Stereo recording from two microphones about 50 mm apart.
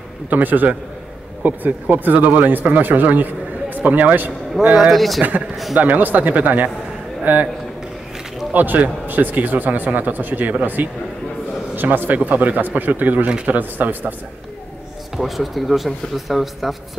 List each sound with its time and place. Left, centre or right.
0.3 s speech: right
4.6 s speech: centre
5.8 s speech: right
8.5 s speech: right
15.1 s speech: centre